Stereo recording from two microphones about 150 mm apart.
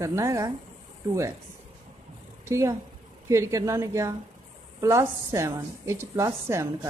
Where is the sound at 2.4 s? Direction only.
20° right (ahead or behind).